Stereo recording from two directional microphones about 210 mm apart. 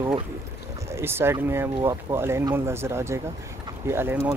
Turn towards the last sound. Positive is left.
turn(degrees=-10)  # may be behind; listen again after turning